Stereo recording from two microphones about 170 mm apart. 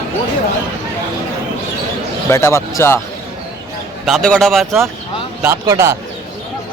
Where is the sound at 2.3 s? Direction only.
15° left (ahead or behind).